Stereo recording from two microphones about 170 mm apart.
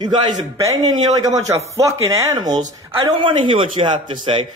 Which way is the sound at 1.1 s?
20° right (ahead or behind).